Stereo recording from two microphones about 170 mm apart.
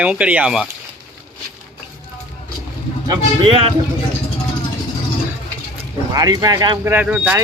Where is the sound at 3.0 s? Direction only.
25° right (ahead or behind).